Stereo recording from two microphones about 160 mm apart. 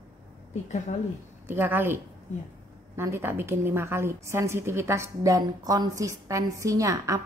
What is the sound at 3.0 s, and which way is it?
A woman's voice, 15° right (ahead or behind).